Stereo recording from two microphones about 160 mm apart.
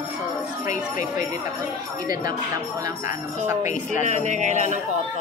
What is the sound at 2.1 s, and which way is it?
Speech, 25° right (ahead or behind).